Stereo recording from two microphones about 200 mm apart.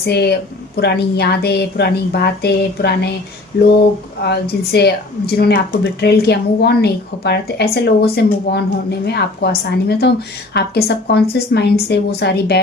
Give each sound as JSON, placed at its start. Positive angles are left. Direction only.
{"t": 0.0, "sound": "speech", "side_deg": 55}
{"t": 4.2, "sound": "speech", "side_deg": 55}